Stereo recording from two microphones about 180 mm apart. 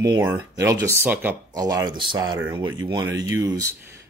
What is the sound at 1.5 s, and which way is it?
Speech, 20° right (ahead or behind).